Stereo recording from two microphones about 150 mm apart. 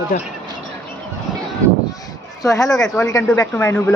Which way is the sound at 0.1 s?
60° left (ahead or behind).